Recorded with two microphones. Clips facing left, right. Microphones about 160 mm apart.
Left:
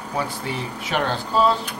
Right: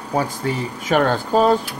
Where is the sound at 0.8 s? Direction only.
45° right (ahead or behind).